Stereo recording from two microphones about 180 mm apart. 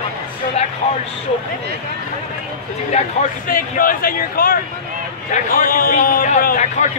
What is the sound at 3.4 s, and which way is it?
Speech, 50° left (ahead or behind).